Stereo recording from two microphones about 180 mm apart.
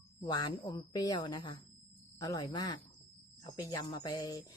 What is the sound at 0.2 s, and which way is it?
Speech, 20° left (ahead or behind).